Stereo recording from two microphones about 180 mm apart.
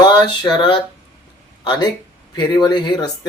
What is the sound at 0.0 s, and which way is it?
Speech, 25° left (ahead or behind).